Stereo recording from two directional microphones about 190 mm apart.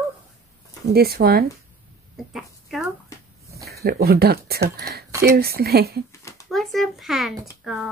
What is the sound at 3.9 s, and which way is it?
Speech, 55° right (ahead or behind).